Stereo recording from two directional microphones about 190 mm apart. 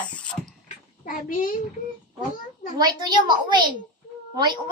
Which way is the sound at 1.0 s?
45° left (ahead or behind).